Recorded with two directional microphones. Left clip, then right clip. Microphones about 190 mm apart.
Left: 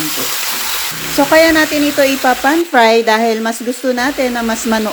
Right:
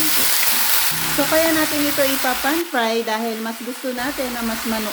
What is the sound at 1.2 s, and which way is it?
Speech, 35° left (ahead or behind).